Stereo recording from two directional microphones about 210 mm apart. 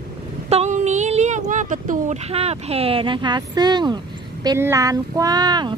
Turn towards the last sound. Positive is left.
turn(degrees=-20)  # may be behind; listen again after turning